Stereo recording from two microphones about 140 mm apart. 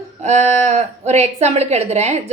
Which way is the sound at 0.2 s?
55° right (ahead or behind).